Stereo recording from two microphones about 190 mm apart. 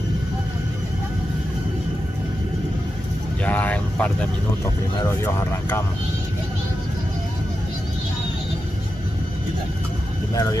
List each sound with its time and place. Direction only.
3.4 s vehicle: 10° left (ahead or behind)
5.0 s speech: 15° left (ahead or behind)
10.3 s speech: 20° left (ahead or behind)